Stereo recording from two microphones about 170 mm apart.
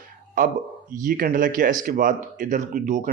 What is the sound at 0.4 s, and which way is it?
Speech, 55° right (ahead or behind).